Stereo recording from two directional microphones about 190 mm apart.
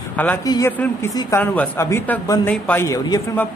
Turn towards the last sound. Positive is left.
turn(degrees=20)  # may be behind; listen again after turning